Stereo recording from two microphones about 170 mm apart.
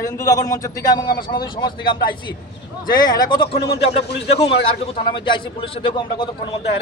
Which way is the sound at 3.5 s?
75° left (ahead or behind).